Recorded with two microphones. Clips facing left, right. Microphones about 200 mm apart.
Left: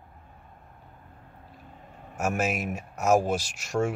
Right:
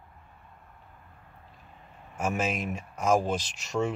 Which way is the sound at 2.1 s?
10° left (ahead or behind).